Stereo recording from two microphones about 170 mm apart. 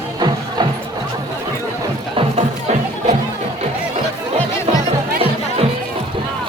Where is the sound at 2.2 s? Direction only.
40° right (ahead or behind).